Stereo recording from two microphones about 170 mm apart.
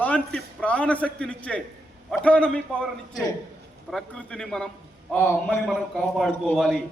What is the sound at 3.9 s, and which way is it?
A man's voice, 5° left (ahead or behind).